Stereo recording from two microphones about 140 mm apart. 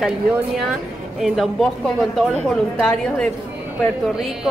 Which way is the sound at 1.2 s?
Centre (ahead or behind).